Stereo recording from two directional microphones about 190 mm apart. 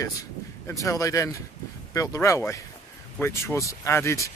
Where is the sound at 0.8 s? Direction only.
15° left (ahead or behind).